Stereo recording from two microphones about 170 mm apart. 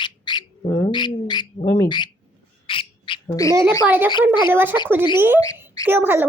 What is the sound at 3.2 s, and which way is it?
Speech, 20° left (ahead or behind).